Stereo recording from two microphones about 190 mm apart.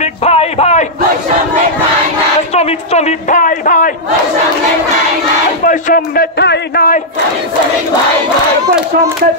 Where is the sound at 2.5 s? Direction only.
35° left (ahead or behind).